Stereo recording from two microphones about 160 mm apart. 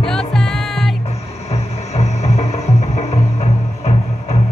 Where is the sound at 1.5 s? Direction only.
45° left (ahead or behind).